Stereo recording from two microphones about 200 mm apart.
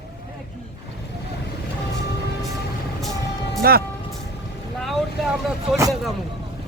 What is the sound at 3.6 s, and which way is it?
Speech, 50° right (ahead or behind).